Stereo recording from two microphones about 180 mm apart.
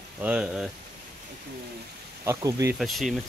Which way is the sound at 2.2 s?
15° right (ahead or behind).